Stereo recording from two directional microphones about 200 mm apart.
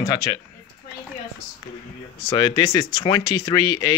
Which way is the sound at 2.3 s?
20° left (ahead or behind).